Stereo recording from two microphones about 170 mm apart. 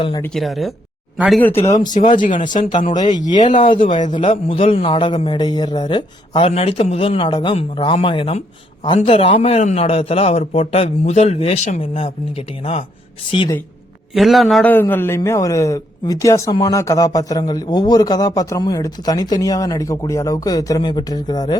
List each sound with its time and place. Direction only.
0.3 s speech: centre (ahead or behind)
1.5 s a man's voice: 40° left (ahead or behind)
1.9 s speech: 50° left (ahead or behind)
3.2 s a man's voice: 25° left (ahead or behind)
3.4 s speech: 45° left (ahead or behind)
3.7 s a man's voice: 30° left (ahead or behind)
13.3 s a man's voice: 30° left (ahead or behind)
14.1 s a man's voice: centre (ahead or behind); by 21.5 s 25° left (ahead or behind)